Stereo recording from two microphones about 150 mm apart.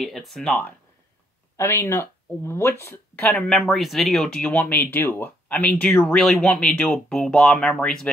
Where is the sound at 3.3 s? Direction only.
5° left (ahead or behind).